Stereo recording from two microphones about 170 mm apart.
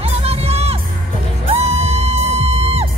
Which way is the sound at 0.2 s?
35° right (ahead or behind).